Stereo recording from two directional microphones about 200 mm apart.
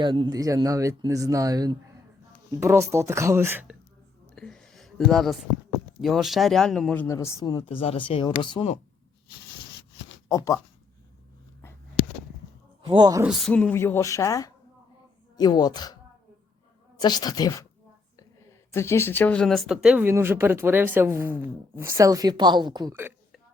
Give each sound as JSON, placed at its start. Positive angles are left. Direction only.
{"t": 0.0, "sound": "speech", "side_deg": -25}
{"t": 4.4, "sound": "a sound", "side_deg": 5}
{"t": 6.0, "sound": "speech", "side_deg": 0}
{"t": 10.2, "sound": "speech", "side_deg": 15}
{"t": 12.8, "sound": "speech", "side_deg": -25}
{"t": 13.2, "sound": "speech", "side_deg": 5}
{"t": 17.0, "sound": "speech", "side_deg": 20}
{"t": 18.7, "sound": "speech", "side_deg": 15}